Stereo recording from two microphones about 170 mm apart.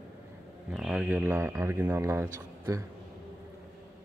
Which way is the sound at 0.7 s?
5° right (ahead or behind).